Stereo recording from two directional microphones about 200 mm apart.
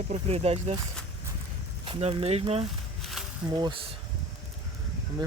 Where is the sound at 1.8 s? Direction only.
25° right (ahead or behind).